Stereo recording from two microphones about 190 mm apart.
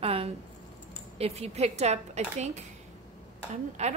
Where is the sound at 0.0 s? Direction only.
30° right (ahead or behind).